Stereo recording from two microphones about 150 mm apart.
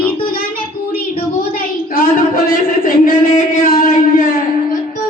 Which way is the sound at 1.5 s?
70° left (ahead or behind).